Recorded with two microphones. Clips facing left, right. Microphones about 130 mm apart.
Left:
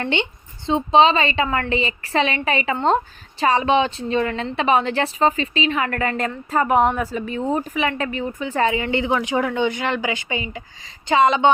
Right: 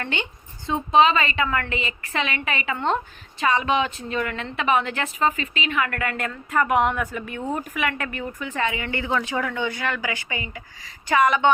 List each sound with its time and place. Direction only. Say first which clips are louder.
0.0 s a woman's voice: left 6 dB; 25° left (ahead or behind)